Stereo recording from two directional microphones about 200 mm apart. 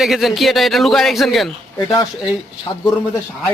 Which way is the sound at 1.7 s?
20° left (ahead or behind).